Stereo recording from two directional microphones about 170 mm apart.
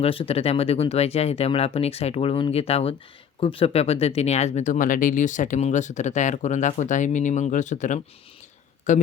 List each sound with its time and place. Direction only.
0.0 s speech: 35° left (ahead or behind)